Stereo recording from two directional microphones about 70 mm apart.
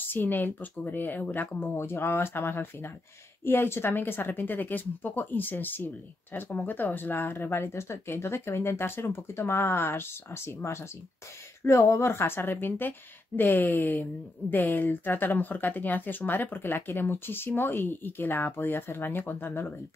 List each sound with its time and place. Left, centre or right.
0.1 s speech: left
1.7 s speech: left